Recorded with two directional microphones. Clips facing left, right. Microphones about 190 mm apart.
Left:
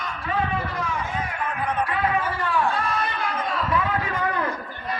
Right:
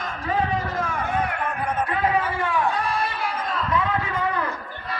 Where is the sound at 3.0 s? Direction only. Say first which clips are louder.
Even; 5° right (ahead or behind).